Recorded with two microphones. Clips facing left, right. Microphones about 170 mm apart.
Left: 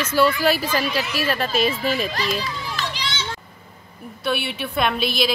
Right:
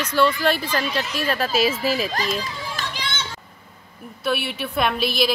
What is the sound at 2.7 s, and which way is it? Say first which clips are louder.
Children playing: left 1 dB; 50° right (ahead or behind).